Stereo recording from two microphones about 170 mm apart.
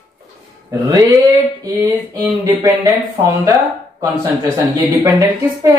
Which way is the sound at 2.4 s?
20° right (ahead or behind).